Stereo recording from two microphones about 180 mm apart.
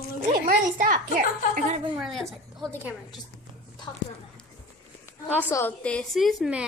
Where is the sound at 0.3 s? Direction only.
50° right (ahead or behind).